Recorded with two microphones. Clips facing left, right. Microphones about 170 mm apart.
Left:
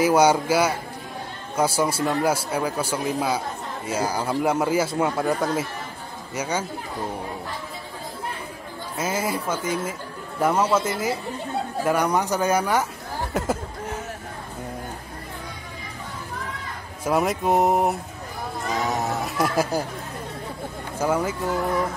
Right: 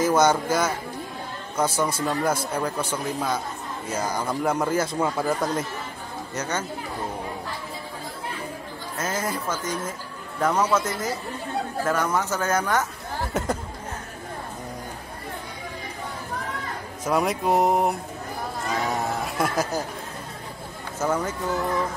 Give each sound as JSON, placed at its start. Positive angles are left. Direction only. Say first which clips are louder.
{"t": 0.0, "sound": "speech", "louder": "left 2 dB", "side_deg": 10}
{"t": 8.9, "sound": "speech", "louder": "left 2 dB", "side_deg": 10}
{"t": 10.6, "sound": "speech", "louder": "even", "side_deg": 25}
{"t": 10.9, "sound": "speech", "louder": "left 3 dB", "side_deg": 10}
{"t": 13.3, "sound": "chatter", "louder": "left 2 dB", "side_deg": 5}
{"t": 17.0, "sound": "speech", "louder": "left 1 dB", "side_deg": 0}
{"t": 19.5, "sound": "speech", "louder": "left 3 dB", "side_deg": 10}
{"t": 21.0, "sound": "speech", "louder": "left 2 dB", "side_deg": 10}